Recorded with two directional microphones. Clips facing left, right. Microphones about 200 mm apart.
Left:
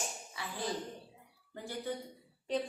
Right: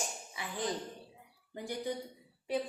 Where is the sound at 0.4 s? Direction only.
15° right (ahead or behind).